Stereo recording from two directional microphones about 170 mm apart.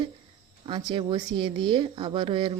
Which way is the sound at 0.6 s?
30° right (ahead or behind).